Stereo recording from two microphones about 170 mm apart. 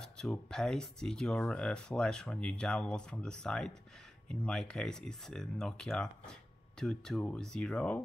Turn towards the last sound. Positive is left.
turn(degrees=5)  # may be behind; listen again after turning